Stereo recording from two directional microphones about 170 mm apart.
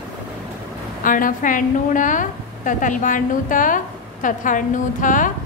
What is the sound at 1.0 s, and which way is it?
A woman's voice, 55° left (ahead or behind).